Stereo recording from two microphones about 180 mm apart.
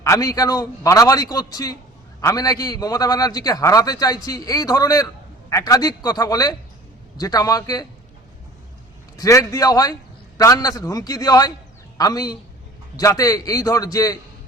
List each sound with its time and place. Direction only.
0.0 s a man's voice: 20° left (ahead or behind)
9.1 s a man's voice: 20° left (ahead or behind)